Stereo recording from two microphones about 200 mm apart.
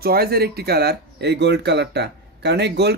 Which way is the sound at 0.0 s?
50° right (ahead or behind).